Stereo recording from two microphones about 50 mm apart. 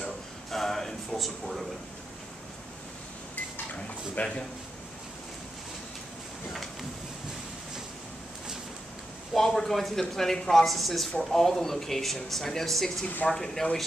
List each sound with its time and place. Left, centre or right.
0.0 s a sound: centre
4.2 s speech: left
9.3 s speech: centre